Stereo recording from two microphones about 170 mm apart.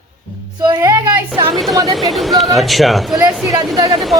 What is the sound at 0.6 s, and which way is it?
Speech, 25° right (ahead or behind).